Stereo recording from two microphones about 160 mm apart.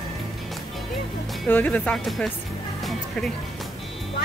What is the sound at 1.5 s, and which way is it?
Speech, 10° left (ahead or behind).